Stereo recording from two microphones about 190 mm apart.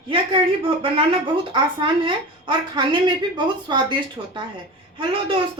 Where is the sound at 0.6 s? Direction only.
30° right (ahead or behind).